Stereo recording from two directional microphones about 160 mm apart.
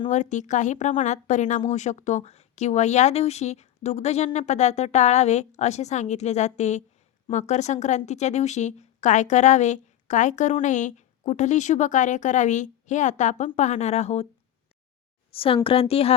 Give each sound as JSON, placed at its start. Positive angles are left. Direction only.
{"t": 0.1, "sound": "a woman's voice", "side_deg": 50}
{"t": 15.3, "sound": "a woman's voice", "side_deg": 35}